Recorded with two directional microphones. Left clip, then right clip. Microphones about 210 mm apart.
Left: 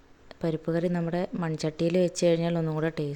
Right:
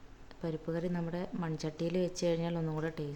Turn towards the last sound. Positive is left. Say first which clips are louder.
# left 8 dB
turn(degrees=30)  # may be behind; listen again after turning